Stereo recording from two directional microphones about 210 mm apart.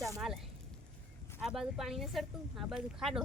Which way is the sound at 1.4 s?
Centre (ahead or behind).